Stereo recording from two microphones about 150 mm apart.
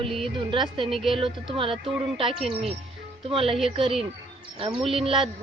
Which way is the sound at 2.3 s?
Centre (ahead or behind).